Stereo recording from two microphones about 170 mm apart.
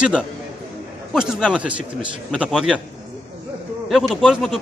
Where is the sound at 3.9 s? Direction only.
Centre (ahead or behind).